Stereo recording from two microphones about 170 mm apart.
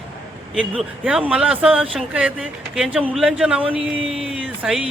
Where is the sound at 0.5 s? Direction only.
Centre (ahead or behind).